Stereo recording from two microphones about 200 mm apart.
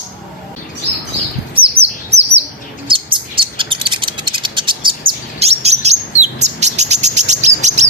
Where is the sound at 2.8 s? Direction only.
25° right (ahead or behind).